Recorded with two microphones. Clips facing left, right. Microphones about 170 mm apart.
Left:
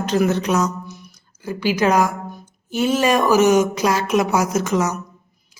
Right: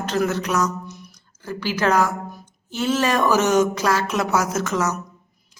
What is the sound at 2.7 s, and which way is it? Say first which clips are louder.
Speech: left 3 dB; 15° left (ahead or behind).